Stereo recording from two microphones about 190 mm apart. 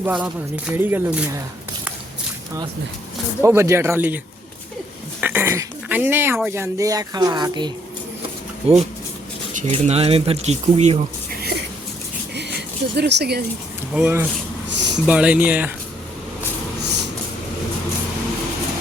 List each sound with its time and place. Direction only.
0.0 s speech: 5° right (ahead or behind)
3.4 s speech: 15° right (ahead or behind)
5.2 s speech: 10° right (ahead or behind); by 11.0 s 35° right (ahead or behind)
12.3 s a sound: 60° right (ahead or behind)
13.0 s speech: 60° right (ahead or behind)
13.9 s speech: 10° right (ahead or behind)
14.7 s a sound: 65° right (ahead or behind)
15.0 s speech: 5° right (ahead or behind)
16.8 s a sound: 65° right (ahead or behind)